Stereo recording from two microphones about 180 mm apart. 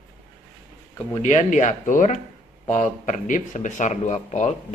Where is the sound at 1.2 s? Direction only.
40° left (ahead or behind).